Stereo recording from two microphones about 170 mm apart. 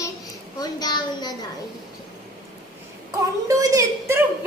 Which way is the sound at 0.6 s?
25° left (ahead or behind).